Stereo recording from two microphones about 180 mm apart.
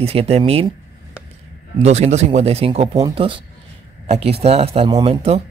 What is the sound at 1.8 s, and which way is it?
Speech, 40° right (ahead or behind).